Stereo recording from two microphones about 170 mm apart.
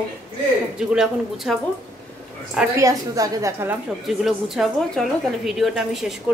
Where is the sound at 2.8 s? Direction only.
20° right (ahead or behind).